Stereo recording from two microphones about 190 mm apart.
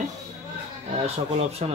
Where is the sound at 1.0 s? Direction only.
35° right (ahead or behind).